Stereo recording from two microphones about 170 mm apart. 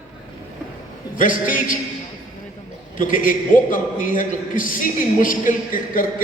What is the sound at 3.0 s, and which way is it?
A man's voice, 50° left (ahead or behind).